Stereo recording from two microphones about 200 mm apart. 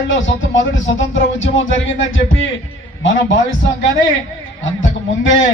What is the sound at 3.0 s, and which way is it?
Speech, 70° left (ahead or behind).